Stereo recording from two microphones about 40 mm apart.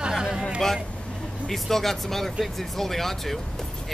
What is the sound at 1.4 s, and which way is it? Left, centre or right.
Speech, centre.